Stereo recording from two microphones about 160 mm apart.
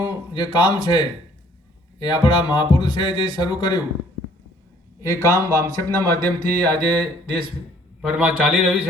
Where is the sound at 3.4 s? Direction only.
25° left (ahead or behind).